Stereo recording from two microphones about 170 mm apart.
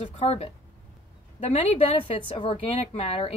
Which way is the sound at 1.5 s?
35° left (ahead or behind).